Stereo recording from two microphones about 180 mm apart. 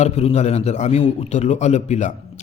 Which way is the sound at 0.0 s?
35° left (ahead or behind).